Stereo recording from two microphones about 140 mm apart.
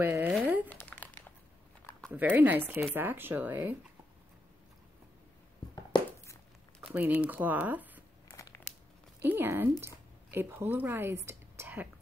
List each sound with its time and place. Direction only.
0.0 s speech: 15° right (ahead or behind)
0.7 s crumpling: 10° left (ahead or behind)
2.1 s speech: 15° right (ahead or behind)
5.9 s a sound: 35° left (ahead or behind)
6.8 s speech: 10° right (ahead or behind)
8.3 s crumpling: 20° left (ahead or behind)
9.2 s a woman's voice: 15° right (ahead or behind)